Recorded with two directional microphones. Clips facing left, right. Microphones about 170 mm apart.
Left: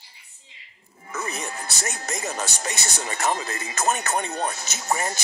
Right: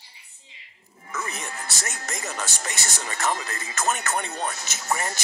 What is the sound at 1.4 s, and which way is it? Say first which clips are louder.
Music: left 3 dB; 35° left (ahead or behind).